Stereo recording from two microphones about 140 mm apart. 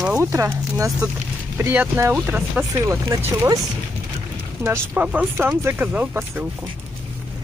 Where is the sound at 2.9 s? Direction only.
25° right (ahead or behind).